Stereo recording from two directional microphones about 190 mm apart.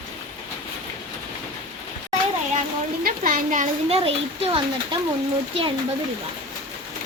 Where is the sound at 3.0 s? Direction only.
45° right (ahead or behind).